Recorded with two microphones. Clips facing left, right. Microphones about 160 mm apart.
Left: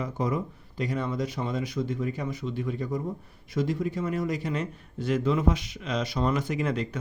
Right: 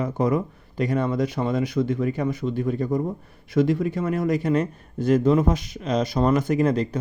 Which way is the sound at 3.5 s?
65° right (ahead or behind).